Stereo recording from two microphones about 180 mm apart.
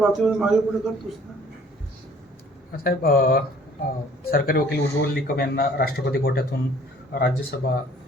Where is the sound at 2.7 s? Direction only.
55° left (ahead or behind).